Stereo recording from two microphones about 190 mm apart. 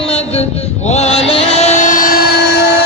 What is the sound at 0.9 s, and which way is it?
Chant, 35° left (ahead or behind).